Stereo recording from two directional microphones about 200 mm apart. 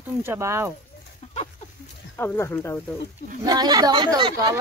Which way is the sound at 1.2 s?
35° left (ahead or behind).